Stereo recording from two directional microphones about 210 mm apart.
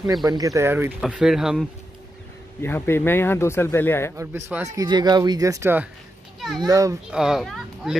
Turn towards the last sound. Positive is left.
turn(degrees=0)  # may be behind; listen again after turning